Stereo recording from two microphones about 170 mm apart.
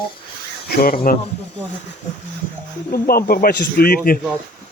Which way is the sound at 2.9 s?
60° left (ahead or behind).